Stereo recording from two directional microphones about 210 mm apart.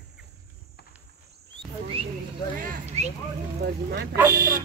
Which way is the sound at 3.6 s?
50° right (ahead or behind).